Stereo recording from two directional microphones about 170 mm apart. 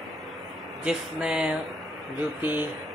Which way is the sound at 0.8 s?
5° right (ahead or behind).